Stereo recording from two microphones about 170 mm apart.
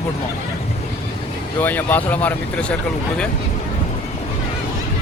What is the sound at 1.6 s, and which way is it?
Speech, 10° left (ahead or behind).